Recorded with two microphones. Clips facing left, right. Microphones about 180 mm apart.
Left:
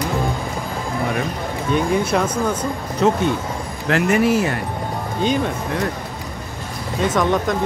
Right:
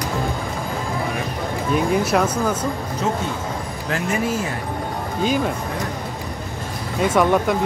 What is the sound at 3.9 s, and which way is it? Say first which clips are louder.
Speech: left 6 dB; 70° left (ahead or behind).